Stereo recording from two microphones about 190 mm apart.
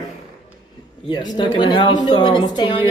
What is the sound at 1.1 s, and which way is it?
A man's voice, 25° left (ahead or behind).